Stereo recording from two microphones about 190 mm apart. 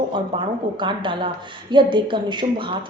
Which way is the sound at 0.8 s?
25° right (ahead or behind).